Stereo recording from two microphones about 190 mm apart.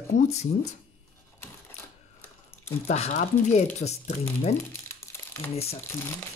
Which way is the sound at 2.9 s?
35° left (ahead or behind).